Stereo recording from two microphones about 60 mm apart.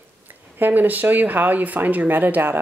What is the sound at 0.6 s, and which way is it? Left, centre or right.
Speech, right.